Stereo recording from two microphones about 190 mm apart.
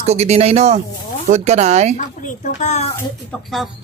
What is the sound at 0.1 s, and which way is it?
Speech, 35° right (ahead or behind).